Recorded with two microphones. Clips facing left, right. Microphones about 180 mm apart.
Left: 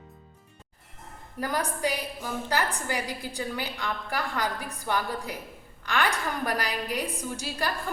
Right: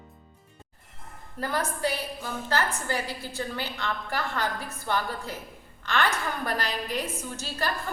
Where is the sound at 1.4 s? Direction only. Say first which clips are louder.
Even; 15° left (ahead or behind).